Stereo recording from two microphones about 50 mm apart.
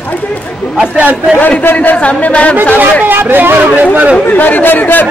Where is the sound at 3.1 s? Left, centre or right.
Right.